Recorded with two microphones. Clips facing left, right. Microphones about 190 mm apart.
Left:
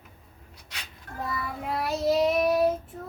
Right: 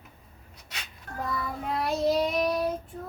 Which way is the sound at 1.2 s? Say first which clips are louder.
Even; 5° left (ahead or behind).